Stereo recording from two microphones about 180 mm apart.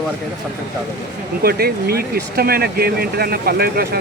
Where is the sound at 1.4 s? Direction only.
55° right (ahead or behind).